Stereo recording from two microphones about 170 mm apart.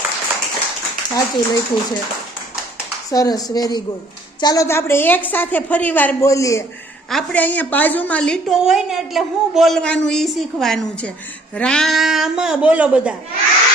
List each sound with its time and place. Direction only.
1.1 s speech: 20° left (ahead or behind)
3.1 s a woman's voice: 20° left (ahead or behind)
7.1 s a woman's voice: 5° left (ahead or behind)